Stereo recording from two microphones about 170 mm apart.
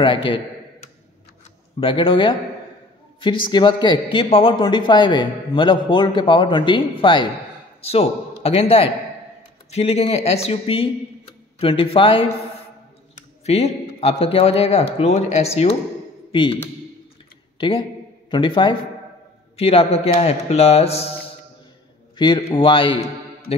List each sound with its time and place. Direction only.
0.0 s speech: 30° left (ahead or behind)
1.8 s a man's voice: 30° left (ahead or behind)
13.5 s a man's voice: 40° left (ahead or behind)
16.3 s a sound: 30° left (ahead or behind)
17.6 s a man's voice: 30° left (ahead or behind)
22.1 s speech: 25° left (ahead or behind)